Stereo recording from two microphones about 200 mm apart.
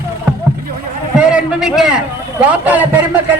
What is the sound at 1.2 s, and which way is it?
A man's voice, 5° right (ahead or behind).